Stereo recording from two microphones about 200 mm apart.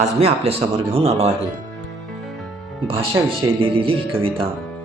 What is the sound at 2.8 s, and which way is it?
Speech, 25° right (ahead or behind).